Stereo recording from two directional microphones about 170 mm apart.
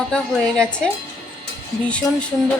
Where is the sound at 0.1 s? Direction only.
5° left (ahead or behind).